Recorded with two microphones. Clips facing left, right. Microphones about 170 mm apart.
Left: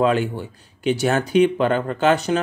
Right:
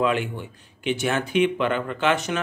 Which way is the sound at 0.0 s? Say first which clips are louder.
Left 4 dB; 35° left (ahead or behind).